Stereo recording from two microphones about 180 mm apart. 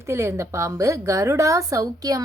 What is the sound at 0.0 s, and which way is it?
A woman's voice, 15° right (ahead or behind).